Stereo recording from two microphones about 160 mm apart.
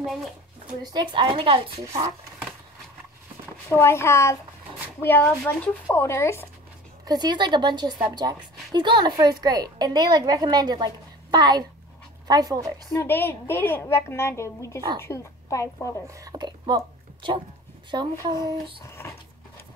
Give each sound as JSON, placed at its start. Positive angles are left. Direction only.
{"t": 0.0, "sound": "speech", "side_deg": 0}
{"t": 0.9, "sound": "speech", "side_deg": -30}
{"t": 3.6, "sound": "a woman's voice", "side_deg": 15}
{"t": 7.1, "sound": "a woman's voice", "side_deg": -25}
{"t": 12.9, "sound": "a woman's voice", "side_deg": 15}
{"t": 16.1, "sound": "a woman's voice", "side_deg": -20}
{"t": 18.9, "sound": "a sound", "side_deg": 15}